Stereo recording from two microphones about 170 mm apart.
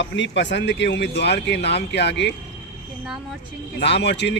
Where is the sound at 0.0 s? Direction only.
90° left.